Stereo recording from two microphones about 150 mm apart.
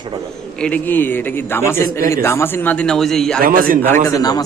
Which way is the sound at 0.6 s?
10° left (ahead or behind).